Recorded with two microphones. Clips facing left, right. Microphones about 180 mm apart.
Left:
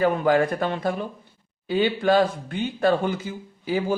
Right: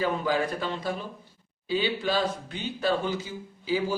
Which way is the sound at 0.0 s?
55° left (ahead or behind).